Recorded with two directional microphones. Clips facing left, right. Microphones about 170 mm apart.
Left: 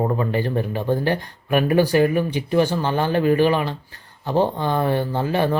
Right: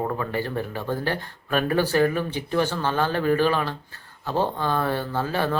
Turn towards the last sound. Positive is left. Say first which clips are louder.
# left 4 dB
turn(degrees=15)  # may be behind; listen again after turning